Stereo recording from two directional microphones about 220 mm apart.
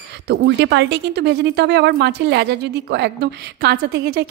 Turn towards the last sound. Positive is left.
turn(degrees=-50)  # may be behind; listen again after turning